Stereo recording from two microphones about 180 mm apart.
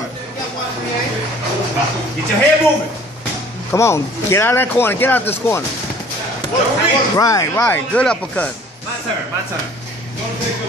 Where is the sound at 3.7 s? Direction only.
15° left (ahead or behind).